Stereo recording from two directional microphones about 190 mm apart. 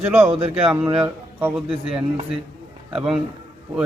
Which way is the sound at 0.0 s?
10° right (ahead or behind).